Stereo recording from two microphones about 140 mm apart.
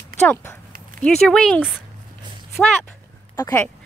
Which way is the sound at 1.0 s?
5° left (ahead or behind).